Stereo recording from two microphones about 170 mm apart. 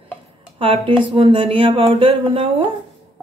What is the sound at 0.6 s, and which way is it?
Speech, 30° right (ahead or behind).